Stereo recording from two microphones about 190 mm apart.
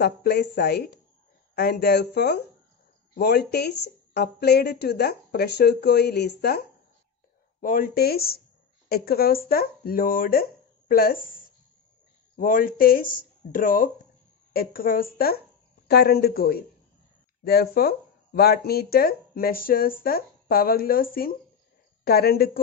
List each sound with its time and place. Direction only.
0.0 s speech: 60° left (ahead or behind)
7.6 s a woman's voice: 50° left (ahead or behind)